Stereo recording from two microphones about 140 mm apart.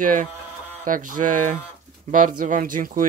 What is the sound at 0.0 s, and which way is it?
Speech, 70° right (ahead or behind).